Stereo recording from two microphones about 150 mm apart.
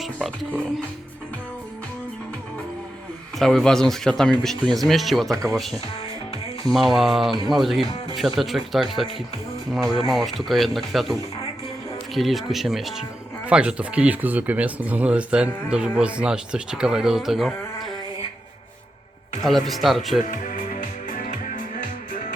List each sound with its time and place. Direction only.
0.0 s speech: 5° left (ahead or behind)
3.3 s speech: 5° left (ahead or behind)
19.5 s speech: centre (ahead or behind)
20.3 s music: 65° left (ahead or behind)